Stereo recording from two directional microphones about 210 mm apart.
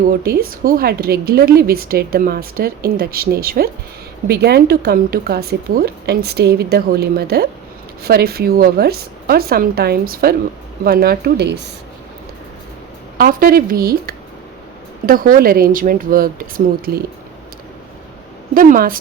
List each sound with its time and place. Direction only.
0.1 s a woman's voice: 45° right (ahead or behind)
13.1 s a woman's voice: 45° right (ahead or behind)
18.5 s a woman's voice: 40° right (ahead or behind)